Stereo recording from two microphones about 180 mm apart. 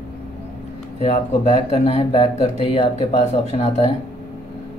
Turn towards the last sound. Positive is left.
turn(degrees=35)  # may be behind; listen again after turning